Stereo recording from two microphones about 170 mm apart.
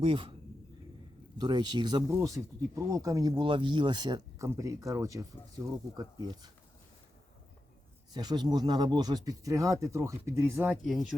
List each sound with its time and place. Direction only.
0.0 s speech: 30° right (ahead or behind)
1.4 s speech: 25° right (ahead or behind)
8.1 s speech: 25° right (ahead or behind)
10.8 s speech: centre (ahead or behind)